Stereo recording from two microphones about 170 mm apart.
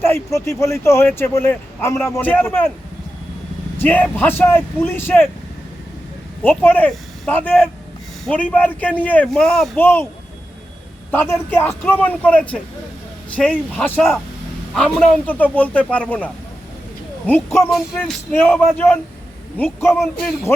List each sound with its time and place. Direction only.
0.0 s speech: 15° left (ahead or behind)
3.8 s speech: 10° left (ahead or behind)
6.4 s speech: 10° left (ahead or behind)
11.1 s speech: 15° left (ahead or behind)
19.9 s speech: 5° right (ahead or behind)